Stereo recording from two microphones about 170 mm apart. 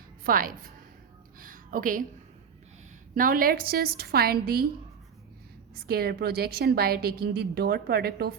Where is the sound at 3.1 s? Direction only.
55° right (ahead or behind).